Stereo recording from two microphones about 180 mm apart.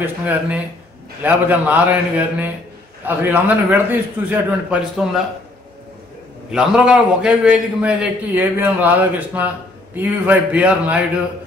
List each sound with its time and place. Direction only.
0.0 s a man's voice: 10° right (ahead or behind)
6.5 s a man's voice: 5° right (ahead or behind)